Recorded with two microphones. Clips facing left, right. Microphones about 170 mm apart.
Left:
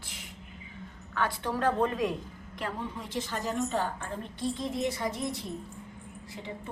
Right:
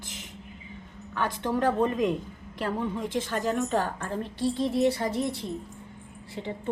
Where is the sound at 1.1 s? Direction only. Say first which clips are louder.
Right 3 dB; 15° right (ahead or behind).